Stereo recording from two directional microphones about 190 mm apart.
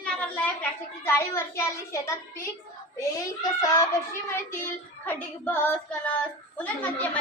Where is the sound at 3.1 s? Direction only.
15° left (ahead or behind).